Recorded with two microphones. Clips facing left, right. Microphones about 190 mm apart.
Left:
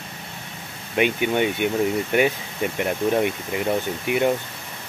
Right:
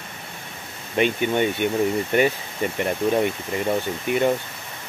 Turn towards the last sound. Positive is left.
turn(degrees=5)  # may be behind; listen again after turning